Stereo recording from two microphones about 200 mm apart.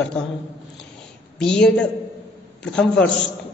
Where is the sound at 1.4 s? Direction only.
5° left (ahead or behind).